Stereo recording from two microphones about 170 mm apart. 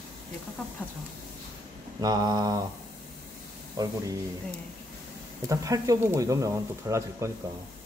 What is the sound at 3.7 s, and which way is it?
Mantra, 20° right (ahead or behind).